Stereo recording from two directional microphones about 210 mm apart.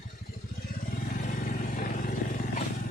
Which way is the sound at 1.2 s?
40° left (ahead or behind).